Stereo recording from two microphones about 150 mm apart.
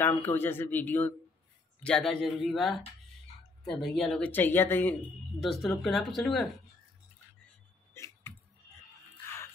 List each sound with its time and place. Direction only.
0.0 s a man's voice: 15° left (ahead or behind)
3.9 s speech: centre (ahead or behind)
5.4 s a man's voice: centre (ahead or behind)
7.9 s a sound: 15° left (ahead or behind)